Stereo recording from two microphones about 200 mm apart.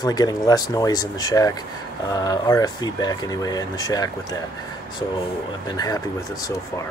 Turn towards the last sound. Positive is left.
turn(degrees=20)  # may be behind; listen again after turning